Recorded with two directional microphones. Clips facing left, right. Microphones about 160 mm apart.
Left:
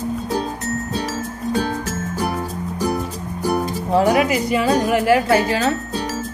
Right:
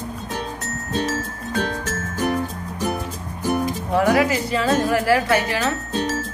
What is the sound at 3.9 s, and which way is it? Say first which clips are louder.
A woman's voice: left 2 dB; 25° left (ahead or behind).